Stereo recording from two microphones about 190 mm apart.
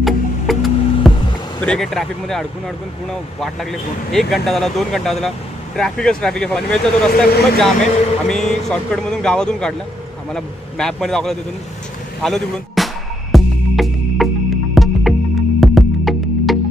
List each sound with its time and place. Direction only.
0.0 s music: centre (ahead or behind)
1.6 s speech: 5° left (ahead or behind)
12.2 s music: centre (ahead or behind)